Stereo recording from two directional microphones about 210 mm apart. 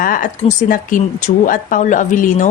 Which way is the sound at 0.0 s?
40° left (ahead or behind).